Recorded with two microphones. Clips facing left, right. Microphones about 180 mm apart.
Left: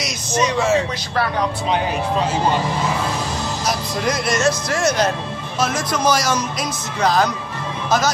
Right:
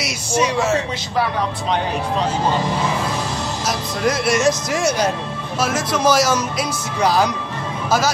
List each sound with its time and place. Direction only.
0.0 s speech: 5° right (ahead or behind)
3.6 s a man's voice: 5° right (ahead or behind)
4.4 s a man's voice: 15° right (ahead or behind)